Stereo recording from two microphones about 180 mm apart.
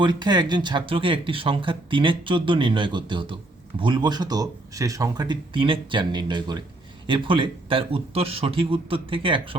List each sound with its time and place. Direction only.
0.0 s speech: 25° right (ahead or behind)